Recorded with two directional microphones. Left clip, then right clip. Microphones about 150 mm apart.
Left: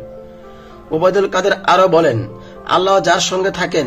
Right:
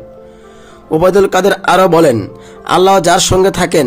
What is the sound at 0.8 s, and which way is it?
Speech, 40° right (ahead or behind).